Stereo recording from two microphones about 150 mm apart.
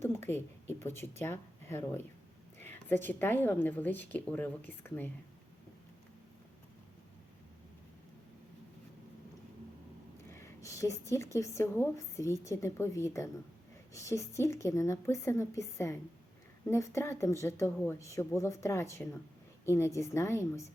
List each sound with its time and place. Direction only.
0.0 s a sound: 15° left (ahead or behind)
1.2 s speech: 15° left (ahead or behind)
10.2 s a woman's voice: 20° left (ahead or behind)